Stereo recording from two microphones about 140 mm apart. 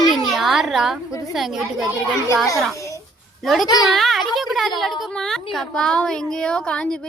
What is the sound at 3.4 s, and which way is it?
Speech, centre (ahead or behind).